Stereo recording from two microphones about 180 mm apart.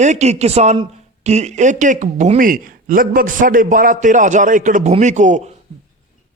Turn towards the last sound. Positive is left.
turn(degrees=-40)  # may be behind; listen again after turning